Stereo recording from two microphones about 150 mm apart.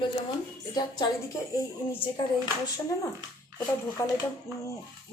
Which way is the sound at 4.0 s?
20° left (ahead or behind).